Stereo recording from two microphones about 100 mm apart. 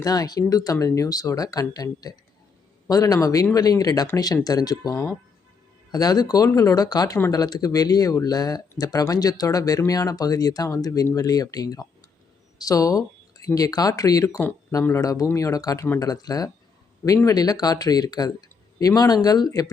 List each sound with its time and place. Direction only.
0.0 s speech: 40° left (ahead or behind)